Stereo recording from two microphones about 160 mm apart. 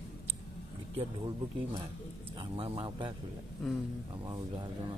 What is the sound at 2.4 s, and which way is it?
Speech, 35° right (ahead or behind).